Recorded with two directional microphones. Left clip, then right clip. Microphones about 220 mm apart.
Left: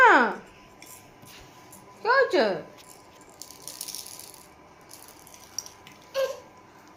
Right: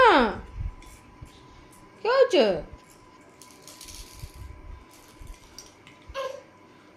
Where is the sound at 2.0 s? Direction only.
30° right (ahead or behind).